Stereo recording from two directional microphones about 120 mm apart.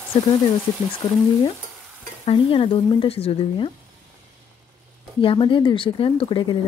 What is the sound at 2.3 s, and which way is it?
Speech, 50° left (ahead or behind).